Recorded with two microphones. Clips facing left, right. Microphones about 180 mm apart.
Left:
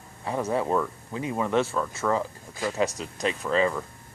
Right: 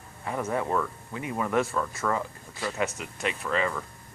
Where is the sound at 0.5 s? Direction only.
15° left (ahead or behind).